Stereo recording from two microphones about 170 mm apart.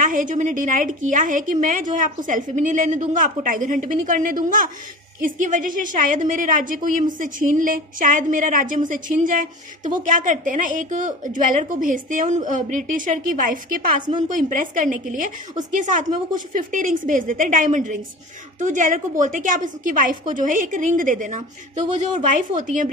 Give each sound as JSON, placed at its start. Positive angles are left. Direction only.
{"t": 0.0, "sound": "a woman's voice", "side_deg": -50}